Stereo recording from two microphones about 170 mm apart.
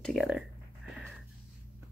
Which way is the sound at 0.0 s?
Centre (ahead or behind).